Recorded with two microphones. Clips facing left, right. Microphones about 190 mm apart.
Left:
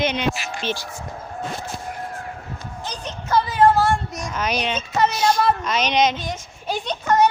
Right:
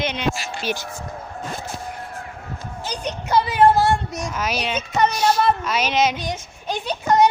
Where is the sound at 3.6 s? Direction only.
20° right (ahead or behind).